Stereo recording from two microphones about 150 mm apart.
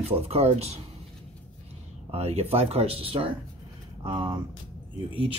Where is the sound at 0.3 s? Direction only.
45° right (ahead or behind).